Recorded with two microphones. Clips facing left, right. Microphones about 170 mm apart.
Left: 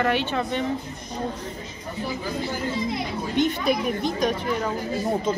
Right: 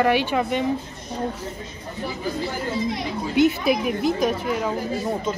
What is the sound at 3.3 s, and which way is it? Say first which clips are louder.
A woman's voice: right 4 dB; 5° right (ahead or behind).